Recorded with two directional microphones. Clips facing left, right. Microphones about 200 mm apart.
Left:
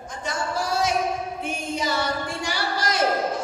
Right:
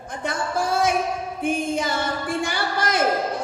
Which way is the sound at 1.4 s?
50° right (ahead or behind).